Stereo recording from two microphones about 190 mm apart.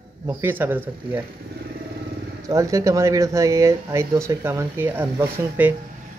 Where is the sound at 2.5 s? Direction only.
15° right (ahead or behind).